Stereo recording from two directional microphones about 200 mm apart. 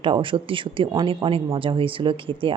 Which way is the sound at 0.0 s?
25° right (ahead or behind).